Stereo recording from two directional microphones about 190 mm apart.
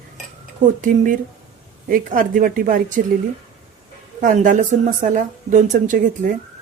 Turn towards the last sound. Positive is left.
turn(degrees=-40)  # may be behind; listen again after turning